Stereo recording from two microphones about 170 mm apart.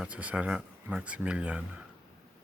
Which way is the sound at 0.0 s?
10° right (ahead or behind).